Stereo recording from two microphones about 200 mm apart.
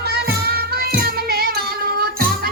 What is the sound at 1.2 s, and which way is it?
Music, 50° right (ahead or behind).